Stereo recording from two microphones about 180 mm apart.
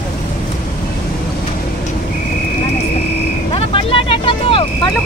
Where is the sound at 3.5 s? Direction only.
30° left (ahead or behind).